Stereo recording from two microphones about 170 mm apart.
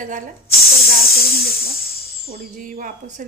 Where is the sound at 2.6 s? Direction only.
55° right (ahead or behind).